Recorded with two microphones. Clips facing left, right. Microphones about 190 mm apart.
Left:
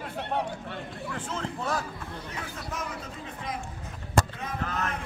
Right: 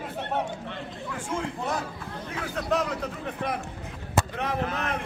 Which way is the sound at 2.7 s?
70° right (ahead or behind).